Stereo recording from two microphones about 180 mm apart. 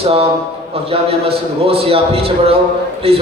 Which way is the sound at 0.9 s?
35° right (ahead or behind).